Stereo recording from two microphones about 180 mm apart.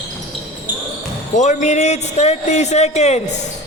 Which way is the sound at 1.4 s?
40° left (ahead or behind).